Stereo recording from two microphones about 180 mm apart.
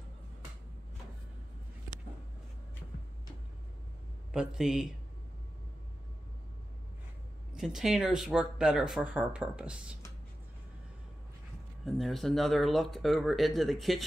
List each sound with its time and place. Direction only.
4.3 s speech: 5° right (ahead or behind)
7.5 s speech: centre (ahead or behind)
11.8 s speech: centre (ahead or behind)